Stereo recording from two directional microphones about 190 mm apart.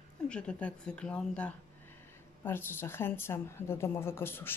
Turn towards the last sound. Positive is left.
turn(degrees=10)  # may be behind; listen again after turning